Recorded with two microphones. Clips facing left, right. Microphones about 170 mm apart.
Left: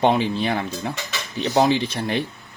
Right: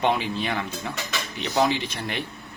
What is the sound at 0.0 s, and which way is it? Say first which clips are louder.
Speech: left 5 dB; 30° left (ahead or behind).